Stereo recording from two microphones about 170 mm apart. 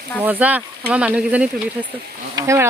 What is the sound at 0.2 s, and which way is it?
Speech, 10° right (ahead or behind).